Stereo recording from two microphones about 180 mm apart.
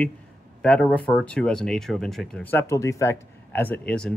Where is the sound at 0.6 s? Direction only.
5° left (ahead or behind).